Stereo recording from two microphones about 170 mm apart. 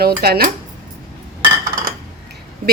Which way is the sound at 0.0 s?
65° right (ahead or behind).